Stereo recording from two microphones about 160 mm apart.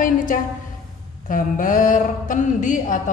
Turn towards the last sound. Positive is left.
turn(degrees=55)  # may be behind; listen again after turning